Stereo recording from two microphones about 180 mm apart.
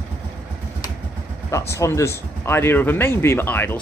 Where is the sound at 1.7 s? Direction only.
15° left (ahead or behind).